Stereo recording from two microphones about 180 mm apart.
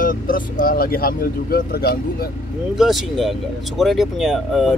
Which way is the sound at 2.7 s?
Centre (ahead or behind).